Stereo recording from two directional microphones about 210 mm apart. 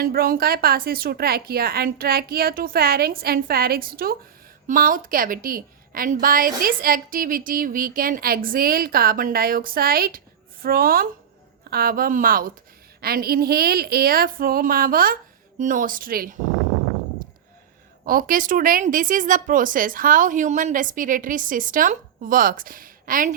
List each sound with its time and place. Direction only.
0.0 s a woman's voice: 45° right (ahead or behind)
18.0 s a woman's voice: 40° right (ahead or behind)